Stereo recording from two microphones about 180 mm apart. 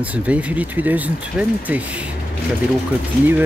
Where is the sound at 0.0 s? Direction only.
10° right (ahead or behind).